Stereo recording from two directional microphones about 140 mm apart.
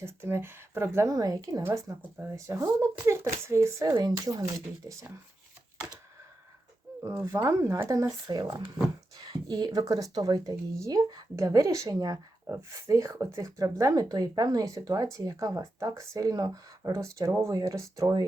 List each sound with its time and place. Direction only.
0.0 s speech: 15° right (ahead or behind)
1.6 s speech: 15° right (ahead or behind)
7.0 s speech: 20° right (ahead or behind)